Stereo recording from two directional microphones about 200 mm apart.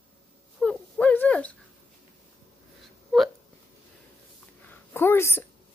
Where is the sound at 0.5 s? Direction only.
5° left (ahead or behind).